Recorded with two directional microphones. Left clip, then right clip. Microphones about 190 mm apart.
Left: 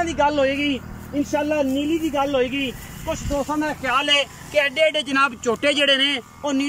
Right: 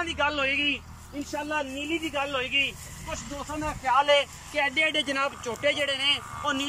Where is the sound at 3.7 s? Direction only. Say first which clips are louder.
Even; 55° left (ahead or behind).